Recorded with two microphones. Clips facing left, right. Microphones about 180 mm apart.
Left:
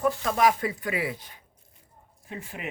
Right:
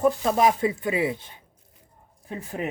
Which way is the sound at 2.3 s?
40° right (ahead or behind).